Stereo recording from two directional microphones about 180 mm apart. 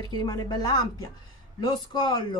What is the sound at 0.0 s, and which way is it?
Speech, 20° left (ahead or behind).